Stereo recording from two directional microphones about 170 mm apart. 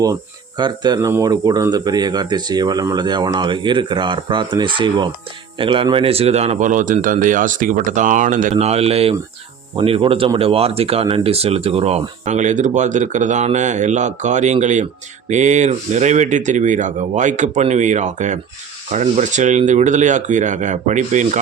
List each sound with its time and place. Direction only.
0.0 s speech: 25° right (ahead or behind); by 21.4 s 45° right (ahead or behind)